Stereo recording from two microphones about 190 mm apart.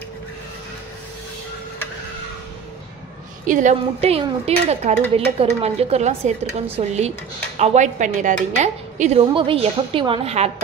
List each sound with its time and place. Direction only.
3.4 s speech: 40° right (ahead or behind)
9.3 s a woman's voice: 25° right (ahead or behind)